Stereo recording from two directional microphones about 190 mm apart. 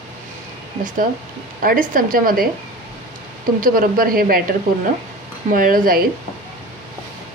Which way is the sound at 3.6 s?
50° right (ahead or behind).